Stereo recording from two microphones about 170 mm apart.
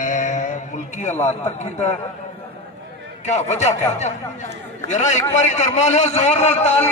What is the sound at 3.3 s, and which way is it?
A man's voice, 40° left (ahead or behind).